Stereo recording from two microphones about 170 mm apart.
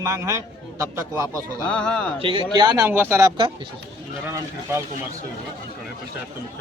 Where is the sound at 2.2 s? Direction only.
30° right (ahead or behind).